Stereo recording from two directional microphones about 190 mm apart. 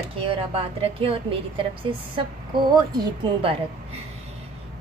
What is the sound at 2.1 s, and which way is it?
A woman's voice, 25° right (ahead or behind).